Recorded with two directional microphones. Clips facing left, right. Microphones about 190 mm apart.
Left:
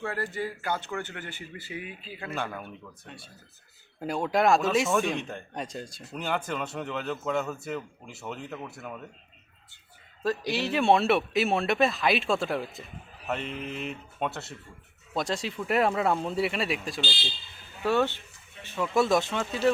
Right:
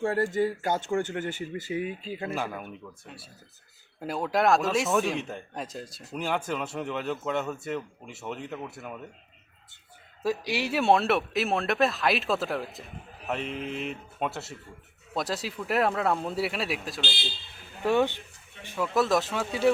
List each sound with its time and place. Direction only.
0.1 s speech: 45° right (ahead or behind)
2.3 s speech: 5° right (ahead or behind)
10.5 s speech: 10° right (ahead or behind)
17.8 s speech: 15° right (ahead or behind)
18.9 s speech: centre (ahead or behind)